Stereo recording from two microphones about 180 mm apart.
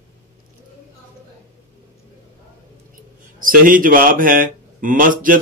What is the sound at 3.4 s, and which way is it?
Speech, 50° right (ahead or behind).